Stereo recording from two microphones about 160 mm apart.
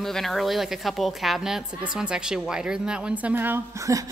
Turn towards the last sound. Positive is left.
turn(degrees=-20)  # may be behind; listen again after turning